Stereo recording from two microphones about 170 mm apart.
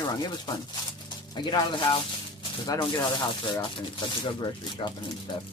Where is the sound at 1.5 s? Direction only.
25° left (ahead or behind).